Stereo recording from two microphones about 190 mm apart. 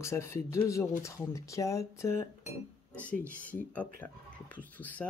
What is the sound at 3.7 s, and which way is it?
Speech, 10° left (ahead or behind).